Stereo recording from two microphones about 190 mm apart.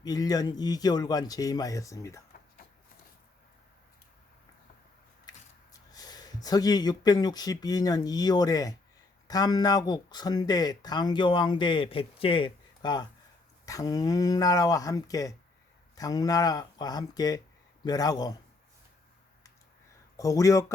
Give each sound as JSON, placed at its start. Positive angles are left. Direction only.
{"t": 0.0, "sound": "speech", "side_deg": 20}
{"t": 6.0, "sound": "speech", "side_deg": 20}
{"t": 20.1, "sound": "speech", "side_deg": 15}